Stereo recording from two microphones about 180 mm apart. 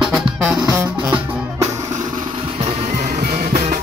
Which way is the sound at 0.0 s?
5° right (ahead or behind).